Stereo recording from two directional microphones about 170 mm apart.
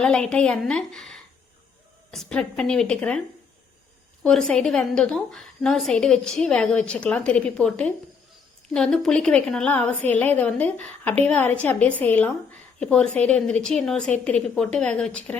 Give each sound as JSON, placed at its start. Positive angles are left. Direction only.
{"t": 0.0, "sound": "a woman's voice", "side_deg": 5}
{"t": 4.2, "sound": "a woman's voice", "side_deg": 5}